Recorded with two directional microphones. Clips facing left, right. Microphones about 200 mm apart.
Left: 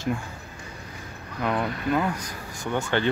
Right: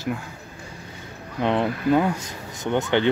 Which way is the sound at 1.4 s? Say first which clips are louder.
Right 5 dB; 30° right (ahead or behind).